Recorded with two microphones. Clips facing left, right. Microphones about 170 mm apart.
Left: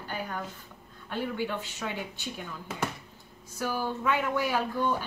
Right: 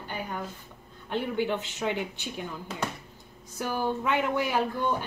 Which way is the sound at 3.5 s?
20° right (ahead or behind).